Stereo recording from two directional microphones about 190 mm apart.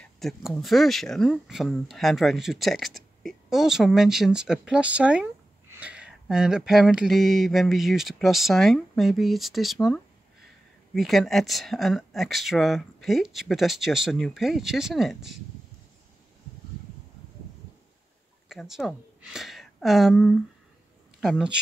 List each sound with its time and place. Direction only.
0.0 s speech: centre (ahead or behind)
11.0 s speech: centre (ahead or behind)
18.5 s a woman's voice: centre (ahead or behind)